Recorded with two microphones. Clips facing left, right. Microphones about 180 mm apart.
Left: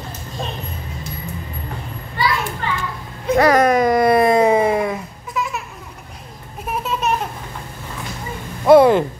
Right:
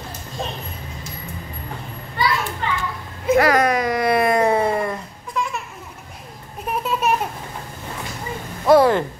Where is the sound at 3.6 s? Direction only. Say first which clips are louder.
Left 5 dB; 50° left (ahead or behind).